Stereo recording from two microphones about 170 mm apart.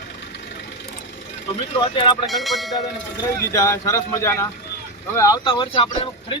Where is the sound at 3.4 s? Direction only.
20° left (ahead or behind).